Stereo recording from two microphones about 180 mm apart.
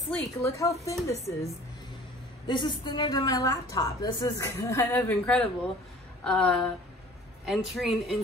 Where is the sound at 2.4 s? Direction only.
25° left (ahead or behind).